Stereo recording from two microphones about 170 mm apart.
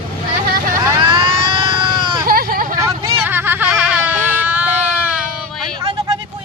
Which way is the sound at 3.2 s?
10° right (ahead or behind).